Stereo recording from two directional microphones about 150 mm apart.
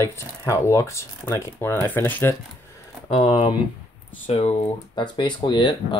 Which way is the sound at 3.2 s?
30° left (ahead or behind).